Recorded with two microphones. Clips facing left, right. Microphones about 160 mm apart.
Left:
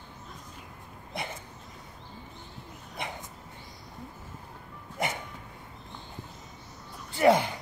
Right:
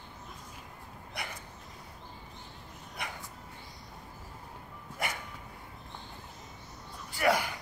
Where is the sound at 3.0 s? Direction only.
20° left (ahead or behind).